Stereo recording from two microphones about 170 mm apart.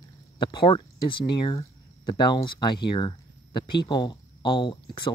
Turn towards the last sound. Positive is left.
turn(degrees=30)  # may be behind; listen again after turning